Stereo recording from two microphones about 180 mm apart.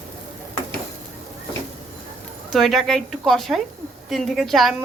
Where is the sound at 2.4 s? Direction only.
Centre (ahead or behind).